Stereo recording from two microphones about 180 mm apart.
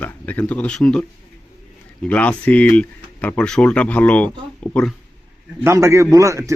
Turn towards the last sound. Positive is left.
turn(degrees=-15)  # may be behind; listen again after turning